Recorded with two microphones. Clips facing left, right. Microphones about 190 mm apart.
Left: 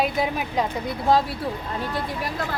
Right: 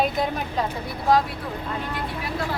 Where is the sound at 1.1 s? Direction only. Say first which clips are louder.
Even; 30° left (ahead or behind).